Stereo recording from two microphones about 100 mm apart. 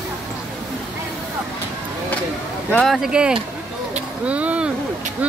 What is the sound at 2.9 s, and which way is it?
Speech, 5° right (ahead or behind).